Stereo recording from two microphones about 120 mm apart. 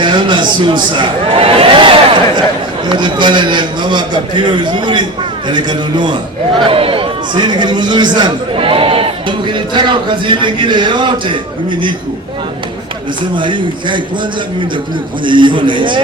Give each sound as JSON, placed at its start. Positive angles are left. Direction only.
{"t": 0.0, "sound": "a man's voice", "side_deg": -40}
{"t": 6.6, "sound": "a man's voice", "side_deg": -50}
{"t": 13.3, "sound": "a man's voice", "side_deg": -40}
{"t": 15.2, "sound": "a man's voice", "side_deg": -45}